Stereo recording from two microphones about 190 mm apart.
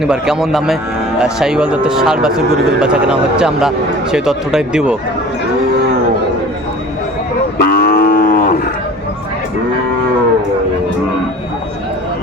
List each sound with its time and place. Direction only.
0.0 s speech: 5° right (ahead or behind)
7.6 s cattle: 55° left (ahead or behind)